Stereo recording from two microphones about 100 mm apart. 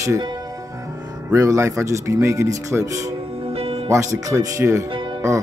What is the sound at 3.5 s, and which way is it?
Music, 80° right.